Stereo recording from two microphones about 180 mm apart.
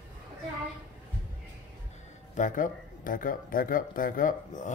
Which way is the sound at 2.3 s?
45° left (ahead or behind).